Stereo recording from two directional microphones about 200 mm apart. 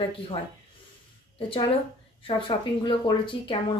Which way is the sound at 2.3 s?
25° left (ahead or behind).